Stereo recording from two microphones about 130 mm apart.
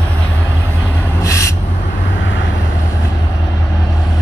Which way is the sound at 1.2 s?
25° left (ahead or behind).